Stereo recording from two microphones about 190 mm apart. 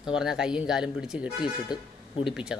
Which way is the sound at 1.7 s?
20° left (ahead or behind).